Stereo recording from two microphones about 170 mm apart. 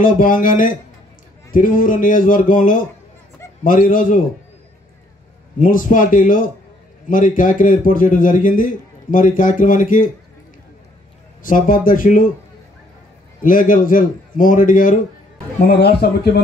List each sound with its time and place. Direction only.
0.0 s a man's voice: 50° left (ahead or behind)
5.6 s a man's voice: 50° left (ahead or behind)
11.4 s a man's voice: 50° left (ahead or behind)
13.4 s a man's voice: 50° left (ahead or behind)
15.6 s a man's voice: 65° left (ahead or behind)